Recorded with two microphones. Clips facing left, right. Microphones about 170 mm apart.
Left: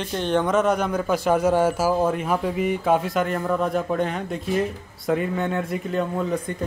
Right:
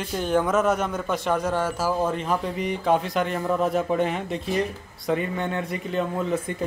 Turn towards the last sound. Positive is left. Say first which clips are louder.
# left 1 dB
turn(degrees=-5)  # may be behind; listen again after turning